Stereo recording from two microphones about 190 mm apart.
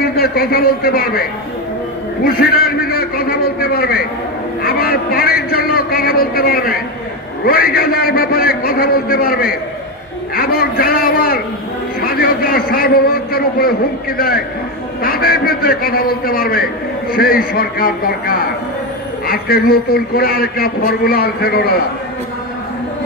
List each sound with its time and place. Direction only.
0.0 s a man's voice: 55° left (ahead or behind)
2.2 s a man's voice: 50° left (ahead or behind)